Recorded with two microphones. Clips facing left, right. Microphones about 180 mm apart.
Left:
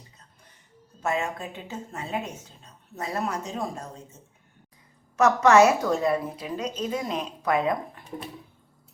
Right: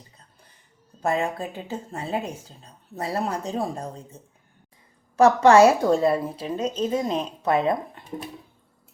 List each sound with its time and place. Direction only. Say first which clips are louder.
1.0 s a woman's voice: right 3 dB; 35° right (ahead or behind)